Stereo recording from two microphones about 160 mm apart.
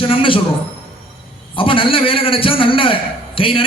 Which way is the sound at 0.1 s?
35° left (ahead or behind).